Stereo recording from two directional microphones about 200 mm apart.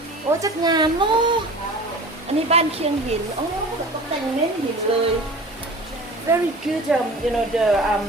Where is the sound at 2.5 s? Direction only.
30° right (ahead or behind).